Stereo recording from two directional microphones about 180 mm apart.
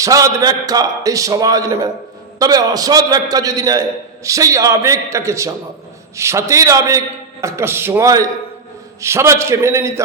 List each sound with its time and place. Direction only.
0.0 s a man's voice: 20° right (ahead or behind)